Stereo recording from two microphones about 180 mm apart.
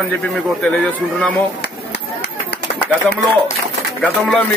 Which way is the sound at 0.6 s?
5° left (ahead or behind).